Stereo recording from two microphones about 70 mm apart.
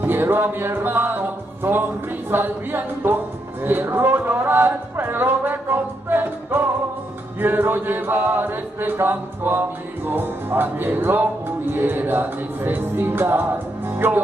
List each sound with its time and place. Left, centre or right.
0.0 s chant: right